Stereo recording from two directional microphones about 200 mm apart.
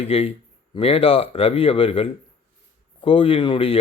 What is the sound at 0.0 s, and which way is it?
A man's voice, 30° left (ahead or behind).